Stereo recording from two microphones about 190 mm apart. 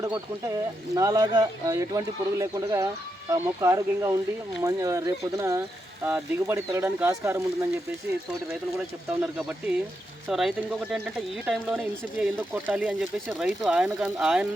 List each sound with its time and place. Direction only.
0.0 s speech: 15° right (ahead or behind)
9.2 s speech: 5° right (ahead or behind)